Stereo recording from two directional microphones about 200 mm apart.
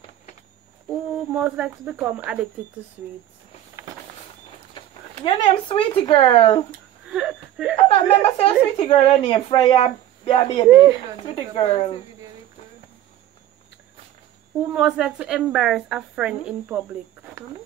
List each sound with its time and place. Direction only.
1.3 s speech: 10° right (ahead or behind)
4.7 s speech: 25° left (ahead or behind)
7.1 s wheeze: 5° right (ahead or behind)
7.9 s a woman's voice: 30° left (ahead or behind)
14.7 s a woman's voice: 5° right (ahead or behind)